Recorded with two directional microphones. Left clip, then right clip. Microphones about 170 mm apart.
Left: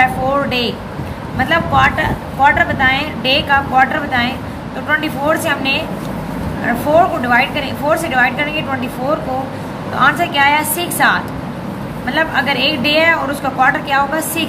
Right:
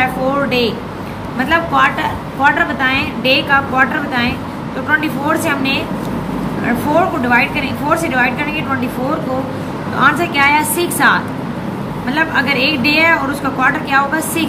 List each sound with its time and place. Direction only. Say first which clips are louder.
0.0 s a sound: left 2 dB; 20° left (ahead or behind)
1.4 s a woman's voice: even; 20° left (ahead or behind)
7.0 s a woman's voice: left 1 dB; 20° left (ahead or behind)
9.9 s a woman's voice: even; 20° left (ahead or behind)